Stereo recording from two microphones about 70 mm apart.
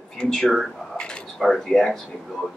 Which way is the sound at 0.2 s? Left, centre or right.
Centre.